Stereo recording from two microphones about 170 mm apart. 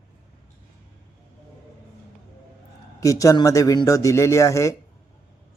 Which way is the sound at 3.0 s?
20° left (ahead or behind).